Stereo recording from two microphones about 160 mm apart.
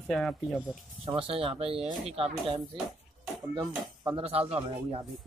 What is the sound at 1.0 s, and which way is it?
A man's voice, 35° right (ahead or behind).